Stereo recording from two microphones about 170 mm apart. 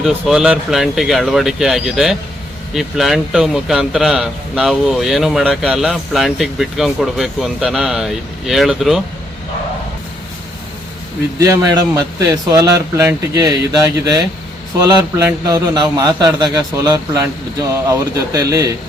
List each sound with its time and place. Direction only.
0.0 s speech: 5° right (ahead or behind)
11.3 s a man's voice: 20° right (ahead or behind)